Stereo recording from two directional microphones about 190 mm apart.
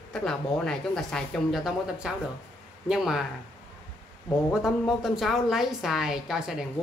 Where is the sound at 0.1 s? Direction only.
5° left (ahead or behind).